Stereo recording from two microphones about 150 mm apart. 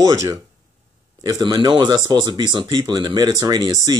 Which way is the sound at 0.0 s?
20° right (ahead or behind).